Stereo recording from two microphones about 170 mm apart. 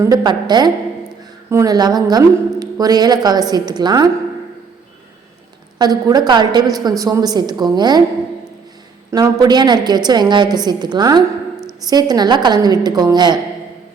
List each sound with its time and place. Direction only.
0.0 s a woman's voice: 20° right (ahead or behind)
5.8 s a woman's voice: 25° right (ahead or behind)
9.0 s a woman's voice: 20° right (ahead or behind)